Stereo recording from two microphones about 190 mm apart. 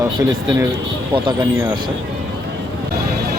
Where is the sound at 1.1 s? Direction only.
25° right (ahead or behind).